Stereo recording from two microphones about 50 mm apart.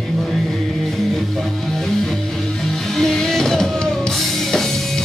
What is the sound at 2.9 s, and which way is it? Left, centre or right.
Music, centre.